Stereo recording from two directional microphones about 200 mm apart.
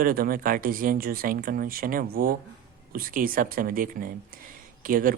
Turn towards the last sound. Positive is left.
turn(degrees=-45)  # may be behind; listen again after turning